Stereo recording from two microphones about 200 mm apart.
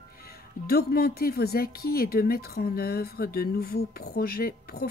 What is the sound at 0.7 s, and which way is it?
Speech, 50° left (ahead or behind).